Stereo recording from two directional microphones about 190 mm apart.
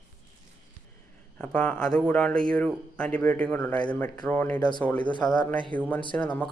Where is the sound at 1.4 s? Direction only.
5° left (ahead or behind).